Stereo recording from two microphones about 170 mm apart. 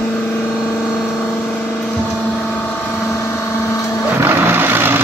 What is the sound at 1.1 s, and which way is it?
Vehicle, centre (ahead or behind).